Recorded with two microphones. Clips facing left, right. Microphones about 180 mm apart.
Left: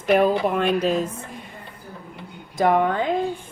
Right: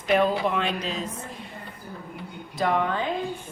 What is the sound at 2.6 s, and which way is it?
Speech, 50° left (ahead or behind).